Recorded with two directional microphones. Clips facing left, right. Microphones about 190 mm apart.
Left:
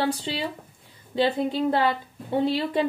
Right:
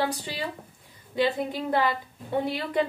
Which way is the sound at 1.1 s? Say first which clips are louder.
Left 3 dB; 25° left (ahead or behind).